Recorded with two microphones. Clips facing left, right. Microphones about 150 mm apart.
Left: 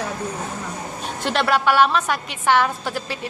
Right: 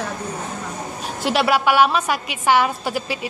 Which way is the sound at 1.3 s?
5° right (ahead or behind).